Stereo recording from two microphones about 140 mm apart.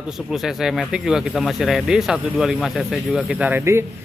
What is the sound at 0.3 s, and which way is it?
Speech, centre (ahead or behind).